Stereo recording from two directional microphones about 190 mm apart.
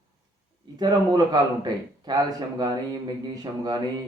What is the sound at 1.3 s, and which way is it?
Speech, 20° right (ahead or behind).